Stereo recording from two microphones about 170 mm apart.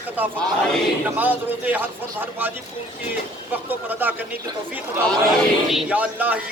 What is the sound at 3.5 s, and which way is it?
Speech, 10° right (ahead or behind).